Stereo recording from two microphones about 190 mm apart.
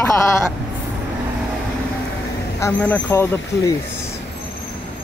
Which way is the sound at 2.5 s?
10° left (ahead or behind).